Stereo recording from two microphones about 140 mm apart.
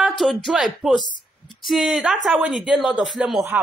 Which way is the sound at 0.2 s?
Centre (ahead or behind).